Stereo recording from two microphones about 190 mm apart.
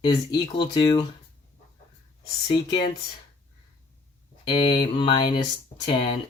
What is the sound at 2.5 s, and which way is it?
Speech, 20° left (ahead or behind).